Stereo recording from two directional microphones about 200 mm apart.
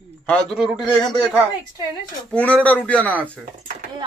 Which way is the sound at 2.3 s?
5° left (ahead or behind).